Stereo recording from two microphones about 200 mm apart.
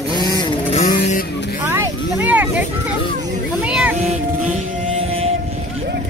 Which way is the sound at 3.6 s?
5° right (ahead or behind).